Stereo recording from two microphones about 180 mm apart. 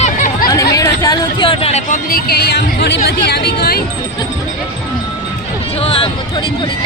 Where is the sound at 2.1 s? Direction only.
55° left (ahead or behind).